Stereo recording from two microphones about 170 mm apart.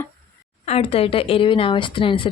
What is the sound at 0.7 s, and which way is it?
A woman's voice, 35° left (ahead or behind).